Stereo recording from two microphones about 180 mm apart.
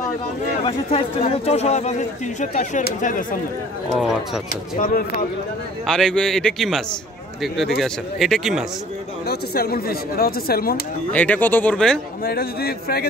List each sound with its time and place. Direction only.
0.7 s speech: 35° left (ahead or behind)
3.9 s a man's voice: centre (ahead or behind)
4.7 s speech: 50° left (ahead or behind)
5.9 s a man's voice: 5° left (ahead or behind)
9.3 s speech: 60° left (ahead or behind)
11.1 s speech: 10° left (ahead or behind)
12.3 s speech: 55° left (ahead or behind)